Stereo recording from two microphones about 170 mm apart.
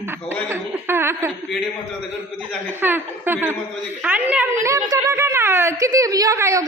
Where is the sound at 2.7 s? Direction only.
10° right (ahead or behind).